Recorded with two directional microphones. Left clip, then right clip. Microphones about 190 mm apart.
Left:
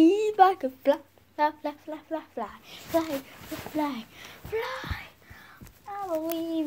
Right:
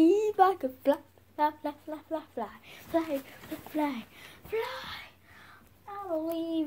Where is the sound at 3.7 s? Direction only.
15° left (ahead or behind).